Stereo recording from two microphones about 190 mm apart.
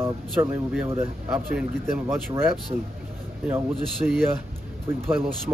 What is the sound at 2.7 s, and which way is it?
Speech, 30° right (ahead or behind).